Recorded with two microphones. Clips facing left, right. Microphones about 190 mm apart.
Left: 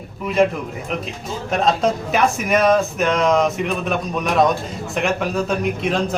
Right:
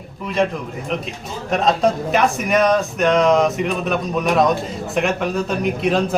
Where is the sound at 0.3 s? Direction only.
Centre (ahead or behind).